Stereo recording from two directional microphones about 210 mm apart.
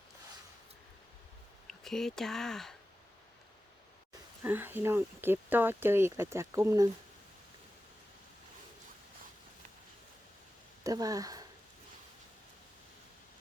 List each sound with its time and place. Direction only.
1.6 s speech: centre (ahead or behind)
4.4 s speech: 10° right (ahead or behind)
10.8 s speech: 15° right (ahead or behind)